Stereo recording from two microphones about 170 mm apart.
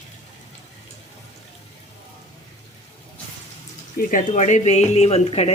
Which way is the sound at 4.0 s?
50° left (ahead or behind).